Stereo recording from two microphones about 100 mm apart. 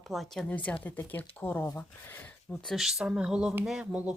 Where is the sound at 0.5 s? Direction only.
15° left (ahead or behind).